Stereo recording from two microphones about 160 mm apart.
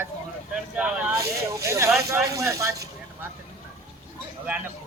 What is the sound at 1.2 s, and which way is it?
Speech, 20° right (ahead or behind).